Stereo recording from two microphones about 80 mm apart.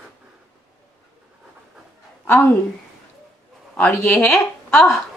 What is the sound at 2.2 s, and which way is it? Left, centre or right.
Speech, left.